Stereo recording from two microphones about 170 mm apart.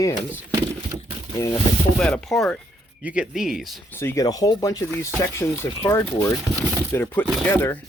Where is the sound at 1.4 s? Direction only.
15° left (ahead or behind).